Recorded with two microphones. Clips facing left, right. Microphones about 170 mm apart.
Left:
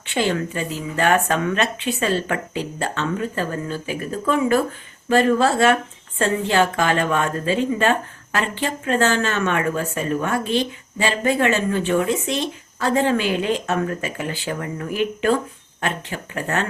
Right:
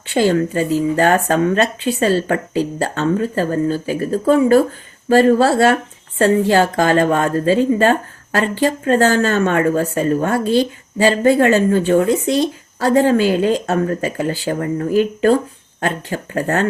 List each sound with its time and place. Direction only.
0.1 s speech: 35° right (ahead or behind)